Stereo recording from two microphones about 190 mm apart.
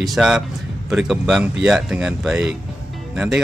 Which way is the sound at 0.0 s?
Centre (ahead or behind).